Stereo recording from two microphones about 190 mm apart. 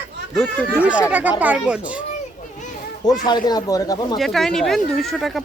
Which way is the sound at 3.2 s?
20° left (ahead or behind).